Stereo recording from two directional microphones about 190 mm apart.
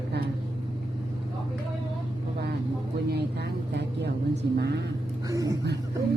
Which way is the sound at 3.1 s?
60° right (ahead or behind).